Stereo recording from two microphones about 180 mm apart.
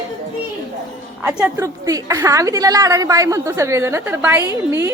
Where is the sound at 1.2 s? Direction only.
15° right (ahead or behind).